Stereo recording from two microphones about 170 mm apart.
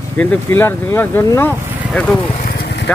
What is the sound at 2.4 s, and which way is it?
Vehicle, 70° left (ahead or behind).